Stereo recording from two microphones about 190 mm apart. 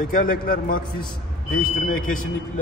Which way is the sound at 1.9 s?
45° left (ahead or behind).